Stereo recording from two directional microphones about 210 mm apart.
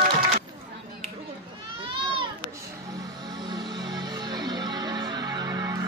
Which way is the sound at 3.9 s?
20° right (ahead or behind).